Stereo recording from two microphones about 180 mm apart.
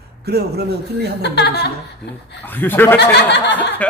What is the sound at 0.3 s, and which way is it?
Speech, 65° right (ahead or behind).